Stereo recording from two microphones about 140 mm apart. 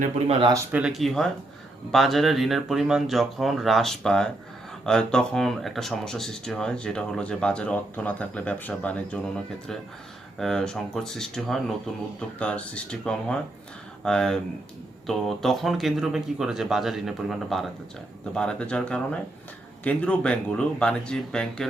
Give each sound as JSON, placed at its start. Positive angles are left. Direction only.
{"t": 0.3, "sound": "speech", "side_deg": -40}
{"t": 0.7, "sound": "speech", "side_deg": -5}